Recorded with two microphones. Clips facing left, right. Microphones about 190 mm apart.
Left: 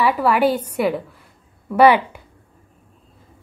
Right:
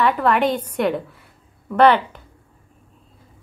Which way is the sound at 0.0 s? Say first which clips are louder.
Left 1 dB; 5° left (ahead or behind).